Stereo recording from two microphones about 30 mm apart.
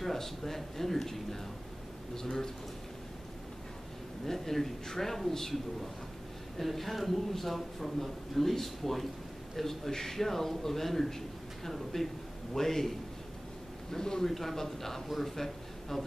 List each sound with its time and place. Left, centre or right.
0.0 s a man's voice: centre
4.3 s a man's voice: centre
6.6 s a man's voice: centre
13.9 s a man's voice: left
14.2 s a man's voice: centre